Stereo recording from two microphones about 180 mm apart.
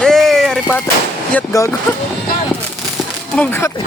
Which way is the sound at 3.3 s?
10° left (ahead or behind).